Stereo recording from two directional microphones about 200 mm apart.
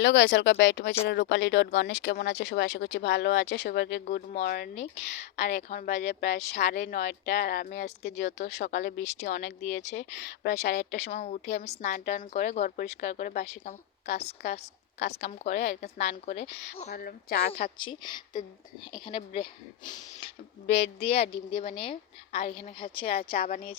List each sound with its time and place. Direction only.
0.0 s speech: 65° left (ahead or behind)
4.3 s speech: 40° left (ahead or behind)
4.8 s a woman's voice: 35° left (ahead or behind)
8.0 s speech: 60° left (ahead or behind)
10.9 s a woman's voice: 30° left (ahead or behind)
14.9 s speech: 60° left (ahead or behind)
15.5 s a woman's voice: 35° left (ahead or behind)
16.9 s speech: 45° left (ahead or behind)
17.5 s speech: 25° left (ahead or behind)